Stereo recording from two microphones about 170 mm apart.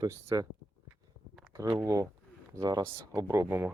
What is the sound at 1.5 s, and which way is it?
Speech, 20° right (ahead or behind).